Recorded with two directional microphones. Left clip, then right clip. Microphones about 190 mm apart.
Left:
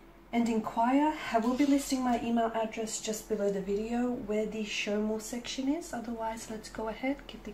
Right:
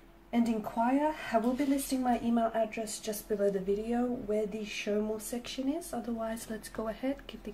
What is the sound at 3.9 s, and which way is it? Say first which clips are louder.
Speech: right 1 dB; 40° right (ahead or behind).